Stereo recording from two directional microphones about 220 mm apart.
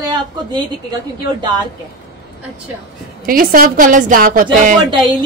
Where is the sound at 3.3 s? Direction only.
40° right (ahead or behind).